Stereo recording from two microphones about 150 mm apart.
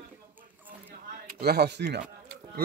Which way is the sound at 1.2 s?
90° right.